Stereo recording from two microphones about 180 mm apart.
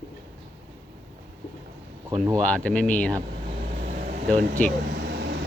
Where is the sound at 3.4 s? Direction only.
50° right (ahead or behind).